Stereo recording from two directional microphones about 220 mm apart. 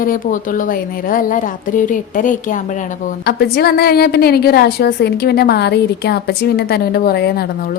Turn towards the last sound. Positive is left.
turn(degrees=45)  # may be behind; listen again after turning